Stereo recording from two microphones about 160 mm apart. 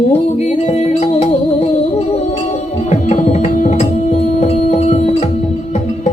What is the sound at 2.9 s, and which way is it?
Tabla, 50° left (ahead or behind).